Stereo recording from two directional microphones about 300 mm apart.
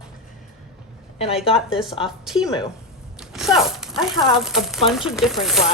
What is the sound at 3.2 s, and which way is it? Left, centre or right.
Zipper, centre.